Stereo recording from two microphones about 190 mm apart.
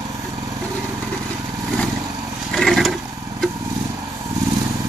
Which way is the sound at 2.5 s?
Centre (ahead or behind).